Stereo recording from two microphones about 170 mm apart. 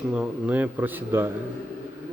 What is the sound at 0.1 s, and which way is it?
Speech, 5° right (ahead or behind).